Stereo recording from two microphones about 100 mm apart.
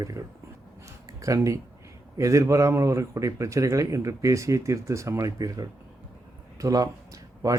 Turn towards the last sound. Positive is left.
turn(degrees=-35)  # may be behind; listen again after turning